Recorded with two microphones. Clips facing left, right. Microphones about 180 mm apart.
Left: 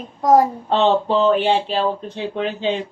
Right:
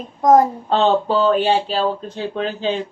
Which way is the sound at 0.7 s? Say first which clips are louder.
Even; 20° left (ahead or behind).